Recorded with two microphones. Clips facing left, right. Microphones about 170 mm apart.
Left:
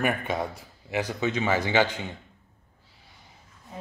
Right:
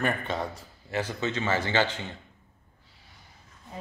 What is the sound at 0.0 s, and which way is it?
Speech, 10° left (ahead or behind).